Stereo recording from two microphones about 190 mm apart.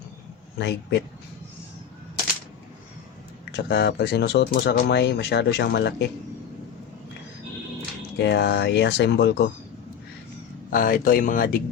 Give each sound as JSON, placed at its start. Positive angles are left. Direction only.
{"t": 0.6, "sound": "speech", "side_deg": 65}
{"t": 3.5, "sound": "speech", "side_deg": 60}
{"t": 8.2, "sound": "speech", "side_deg": 65}
{"t": 10.7, "sound": "speech", "side_deg": 50}